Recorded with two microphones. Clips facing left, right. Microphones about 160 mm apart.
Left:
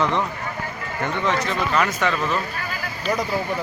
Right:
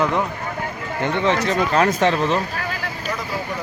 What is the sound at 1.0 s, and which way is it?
Speech, 25° right (ahead or behind).